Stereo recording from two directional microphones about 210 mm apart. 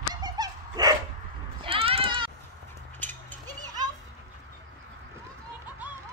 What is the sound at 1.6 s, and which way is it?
Bleat, 25° right (ahead or behind).